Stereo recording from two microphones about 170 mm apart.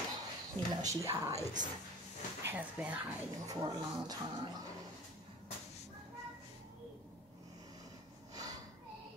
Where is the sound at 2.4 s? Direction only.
10° right (ahead or behind).